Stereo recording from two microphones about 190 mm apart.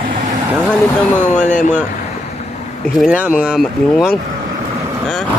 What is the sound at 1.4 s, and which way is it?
Speech, 40° left (ahead or behind).